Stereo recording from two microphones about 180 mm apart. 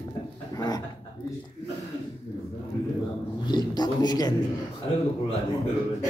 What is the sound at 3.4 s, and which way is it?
Speech, 25° left (ahead or behind).